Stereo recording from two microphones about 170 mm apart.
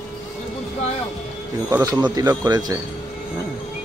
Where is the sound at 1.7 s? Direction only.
20° right (ahead or behind).